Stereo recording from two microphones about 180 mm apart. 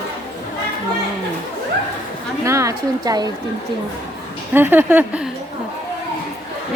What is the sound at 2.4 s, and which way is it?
Speech, 15° right (ahead or behind).